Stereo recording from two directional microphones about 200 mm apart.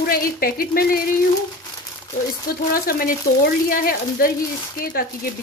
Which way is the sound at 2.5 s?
45° left (ahead or behind).